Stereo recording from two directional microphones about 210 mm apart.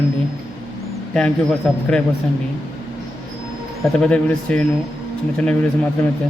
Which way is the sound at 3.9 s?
5° left (ahead or behind).